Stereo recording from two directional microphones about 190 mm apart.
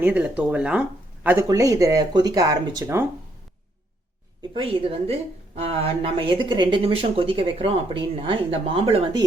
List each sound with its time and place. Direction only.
0.0 s speech: 10° right (ahead or behind)
4.4 s speech: 30° right (ahead or behind)